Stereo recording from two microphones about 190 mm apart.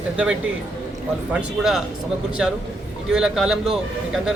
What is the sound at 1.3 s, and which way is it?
A man's voice, 5° right (ahead or behind).